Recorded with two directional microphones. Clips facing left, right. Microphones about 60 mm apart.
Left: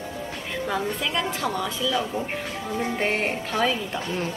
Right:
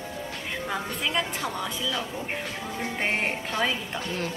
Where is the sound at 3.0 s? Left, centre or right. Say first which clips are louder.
Left 2 dB; right.